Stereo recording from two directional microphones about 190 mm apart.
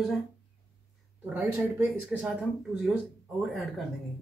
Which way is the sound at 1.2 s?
10° right (ahead or behind).